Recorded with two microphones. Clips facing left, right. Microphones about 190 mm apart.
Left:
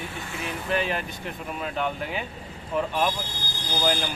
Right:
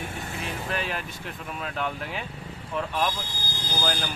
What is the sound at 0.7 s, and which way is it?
Speech, centre (ahead or behind).